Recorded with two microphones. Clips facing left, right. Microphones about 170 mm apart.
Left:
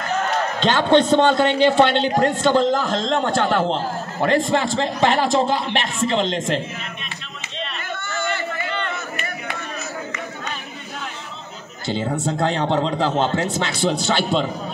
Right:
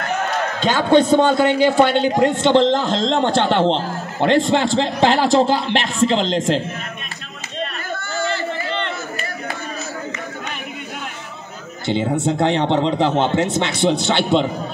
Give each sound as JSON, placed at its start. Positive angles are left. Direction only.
{"t": 0.6, "sound": "speech", "side_deg": -10}
{"t": 2.7, "sound": "a man's voice", "side_deg": -30}
{"t": 7.9, "sound": "a sound", "side_deg": -35}
{"t": 11.9, "sound": "a man's voice", "side_deg": -20}